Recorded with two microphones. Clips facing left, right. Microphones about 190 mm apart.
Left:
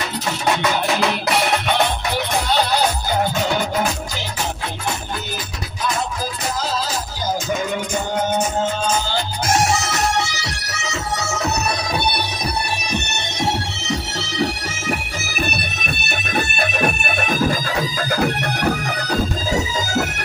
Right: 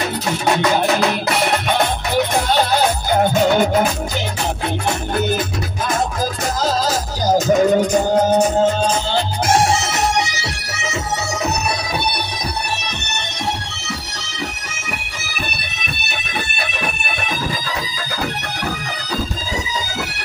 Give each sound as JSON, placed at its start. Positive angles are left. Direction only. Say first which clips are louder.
{"t": 5.8, "sound": "music", "louder": "right 3 dB", "side_deg": -50}
{"t": 16.3, "sound": "bagpipes", "louder": "left 5 dB", "side_deg": 45}